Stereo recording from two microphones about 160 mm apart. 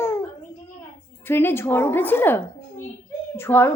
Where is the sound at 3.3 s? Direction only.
15° left (ahead or behind).